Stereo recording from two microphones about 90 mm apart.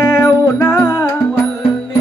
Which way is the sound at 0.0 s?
40° left (ahead or behind).